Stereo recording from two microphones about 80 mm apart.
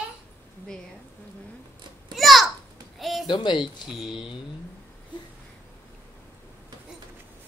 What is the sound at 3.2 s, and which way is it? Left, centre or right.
Speech, left.